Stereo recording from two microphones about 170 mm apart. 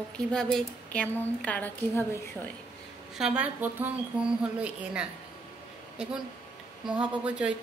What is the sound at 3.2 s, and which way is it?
Speech, 5° right (ahead or behind).